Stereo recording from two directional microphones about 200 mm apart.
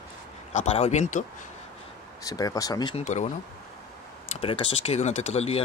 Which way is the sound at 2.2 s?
20° left (ahead or behind).